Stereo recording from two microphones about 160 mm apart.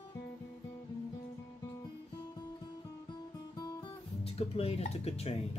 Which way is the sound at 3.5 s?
35° left (ahead or behind).